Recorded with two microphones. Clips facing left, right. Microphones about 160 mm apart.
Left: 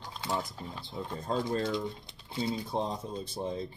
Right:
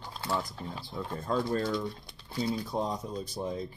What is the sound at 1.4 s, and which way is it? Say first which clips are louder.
Speech: right 1 dB; 20° left (ahead or behind).